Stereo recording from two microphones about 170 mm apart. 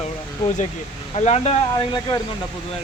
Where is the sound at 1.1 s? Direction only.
40° left (ahead or behind).